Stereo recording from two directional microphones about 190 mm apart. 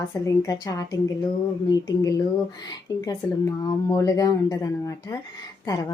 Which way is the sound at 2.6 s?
20° left (ahead or behind).